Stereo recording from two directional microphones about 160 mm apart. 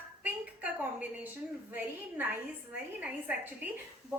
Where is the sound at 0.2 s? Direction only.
10° right (ahead or behind).